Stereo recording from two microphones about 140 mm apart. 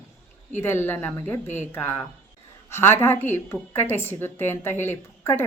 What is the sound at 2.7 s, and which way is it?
A woman's voice, 15° left (ahead or behind).